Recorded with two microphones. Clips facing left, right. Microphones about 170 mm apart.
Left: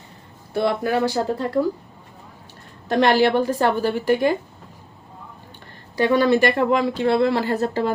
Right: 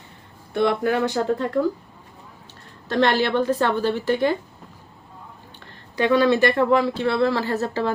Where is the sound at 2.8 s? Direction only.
15° left (ahead or behind).